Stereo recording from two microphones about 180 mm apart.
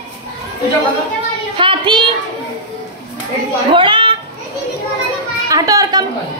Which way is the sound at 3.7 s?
30° right (ahead or behind).